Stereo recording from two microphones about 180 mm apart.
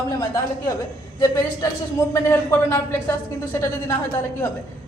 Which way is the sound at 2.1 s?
15° left (ahead or behind).